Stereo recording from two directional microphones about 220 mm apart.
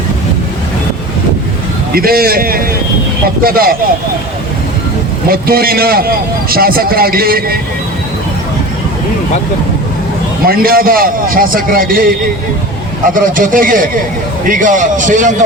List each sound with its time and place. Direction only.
1.9 s a man's voice: 45° right (ahead or behind)
5.3 s a man's voice: 40° right (ahead or behind)
10.4 s a man's voice: 40° right (ahead or behind)
13.1 s a man's voice: 40° right (ahead or behind)